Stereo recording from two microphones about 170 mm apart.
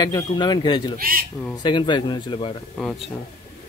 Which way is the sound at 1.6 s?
25° left (ahead or behind).